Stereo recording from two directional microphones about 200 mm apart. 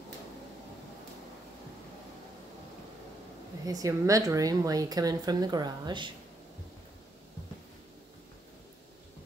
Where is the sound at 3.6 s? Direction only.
15° right (ahead or behind).